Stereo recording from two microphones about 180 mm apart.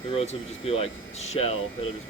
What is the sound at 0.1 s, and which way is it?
Speech, 30° left (ahead or behind).